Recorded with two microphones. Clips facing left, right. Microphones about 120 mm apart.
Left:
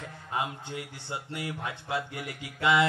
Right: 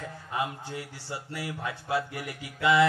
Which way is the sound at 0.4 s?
25° left (ahead or behind).